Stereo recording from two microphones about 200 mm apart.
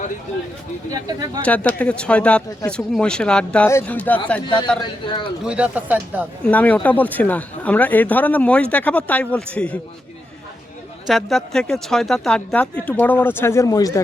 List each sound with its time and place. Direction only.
1.5 s speech: 5° left (ahead or behind)
4.4 s a man's voice: 20° left (ahead or behind)
5.5 s speech: 5° right (ahead or behind)
6.4 s speech: 5° left (ahead or behind)
11.1 s speech: centre (ahead or behind); by 14.0 s 15° left (ahead or behind)